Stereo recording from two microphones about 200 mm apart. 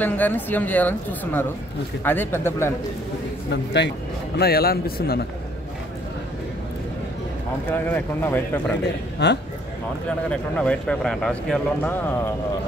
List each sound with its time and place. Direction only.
0.0 s a woman's voice: 10° left (ahead or behind)
4.4 s speech: 50° left (ahead or behind)
7.7 s a woman's voice: 10° left (ahead or behind)
9.2 s a man's voice: 55° left (ahead or behind)
10.0 s speech: 5° left (ahead or behind)